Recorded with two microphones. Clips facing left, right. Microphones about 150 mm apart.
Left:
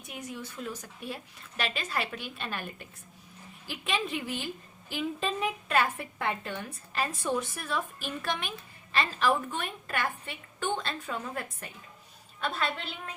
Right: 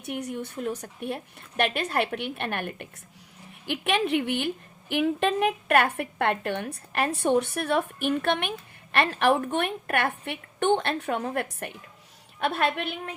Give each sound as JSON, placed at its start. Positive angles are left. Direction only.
{"t": 0.0, "sound": "a woman's voice", "side_deg": -65}